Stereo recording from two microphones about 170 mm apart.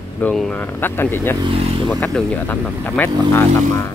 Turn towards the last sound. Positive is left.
turn(degrees=15)  # may be behind; listen again after turning